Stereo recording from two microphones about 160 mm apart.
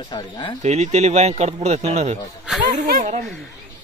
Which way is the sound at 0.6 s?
45° right (ahead or behind).